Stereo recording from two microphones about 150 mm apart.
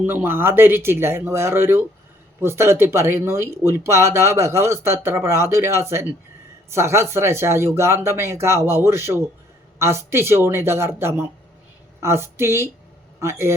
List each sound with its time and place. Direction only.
0.0 s a man's voice: 15° right (ahead or behind)